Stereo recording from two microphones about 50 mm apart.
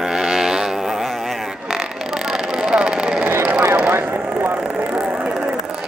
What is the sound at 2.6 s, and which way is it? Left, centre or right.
Vehicle, centre.